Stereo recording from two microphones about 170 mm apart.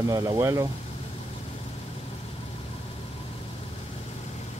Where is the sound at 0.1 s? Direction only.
20° right (ahead or behind).